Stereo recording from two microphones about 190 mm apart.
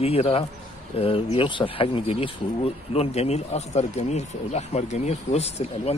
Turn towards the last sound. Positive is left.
turn(degrees=35)  # may be behind; listen again after turning